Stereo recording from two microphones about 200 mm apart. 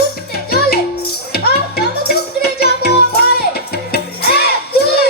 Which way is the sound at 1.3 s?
50° left (ahead or behind).